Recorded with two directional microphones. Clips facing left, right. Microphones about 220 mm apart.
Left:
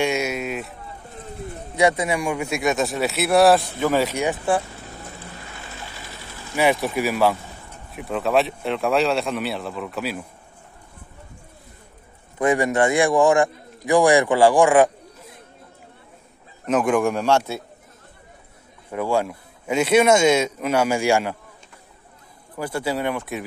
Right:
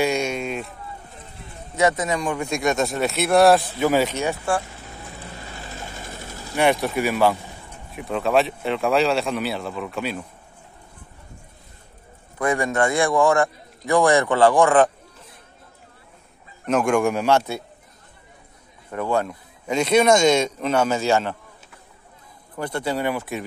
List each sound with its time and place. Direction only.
0.0 s sheep: 5° left (ahead or behind)
1.8 s speech: 15° left (ahead or behind); by 4.1 s 5° right (ahead or behind)
4.1 s a man's voice: 15° left (ahead or behind)
5.8 s ratchet: 45° right (ahead or behind)
6.5 s speech: 5° left (ahead or behind)
12.4 s a man's voice: 20° left (ahead or behind)
16.6 s speech: 5° left (ahead or behind)
18.9 s a man's voice: 10° left (ahead or behind)
22.6 s speech: 5° left (ahead or behind)